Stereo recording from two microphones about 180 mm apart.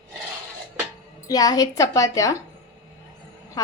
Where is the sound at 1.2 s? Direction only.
20° left (ahead or behind).